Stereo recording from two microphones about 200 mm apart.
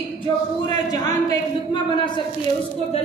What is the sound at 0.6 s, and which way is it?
Speech, 20° left (ahead or behind).